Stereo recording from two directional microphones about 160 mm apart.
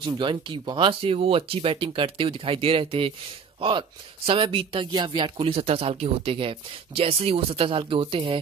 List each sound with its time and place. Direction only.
0.0 s speech: 30° right (ahead or behind)
4.3 s speech: 35° right (ahead or behind)